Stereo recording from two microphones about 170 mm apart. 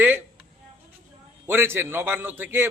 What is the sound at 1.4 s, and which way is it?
A man's voice, 15° right (ahead or behind).